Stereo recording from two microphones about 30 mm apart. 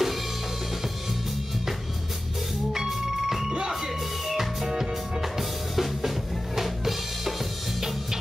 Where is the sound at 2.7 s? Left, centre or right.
Centre.